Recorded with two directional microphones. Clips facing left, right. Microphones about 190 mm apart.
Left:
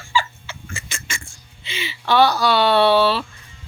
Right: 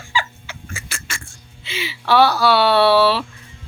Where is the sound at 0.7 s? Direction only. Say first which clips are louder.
Even; 5° right (ahead or behind).